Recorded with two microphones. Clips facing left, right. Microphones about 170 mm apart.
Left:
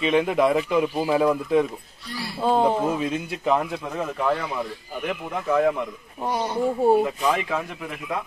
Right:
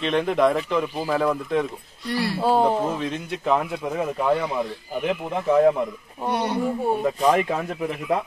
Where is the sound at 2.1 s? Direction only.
75° right (ahead or behind).